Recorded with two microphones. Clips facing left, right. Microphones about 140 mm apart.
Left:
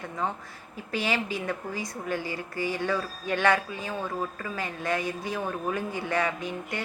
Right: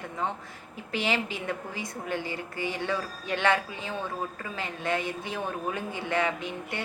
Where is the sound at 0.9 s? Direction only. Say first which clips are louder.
Left 1 dB; 15° right (ahead or behind).